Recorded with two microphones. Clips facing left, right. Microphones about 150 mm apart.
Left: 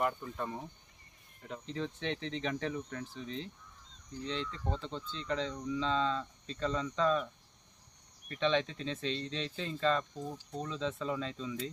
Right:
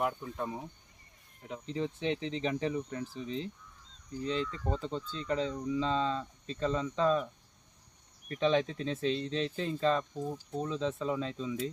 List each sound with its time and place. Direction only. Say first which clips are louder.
0.0 s speech: right 1 dB; 5° right (ahead or behind)
7.0 s speech: right 2 dB; 20° right (ahead or behind)
8.4 s speech: right 3 dB; 5° right (ahead or behind)